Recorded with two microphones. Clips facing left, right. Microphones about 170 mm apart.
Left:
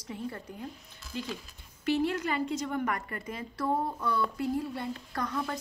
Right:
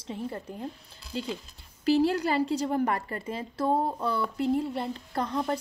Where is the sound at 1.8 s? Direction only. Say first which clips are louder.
Right 5 dB; 35° right (ahead or behind).